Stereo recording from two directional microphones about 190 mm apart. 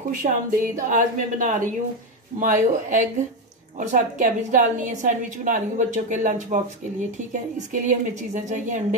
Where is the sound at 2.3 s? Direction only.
40° right (ahead or behind).